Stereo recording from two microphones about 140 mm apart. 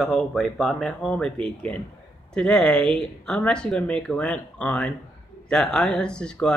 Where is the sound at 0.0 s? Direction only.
Centre (ahead or behind).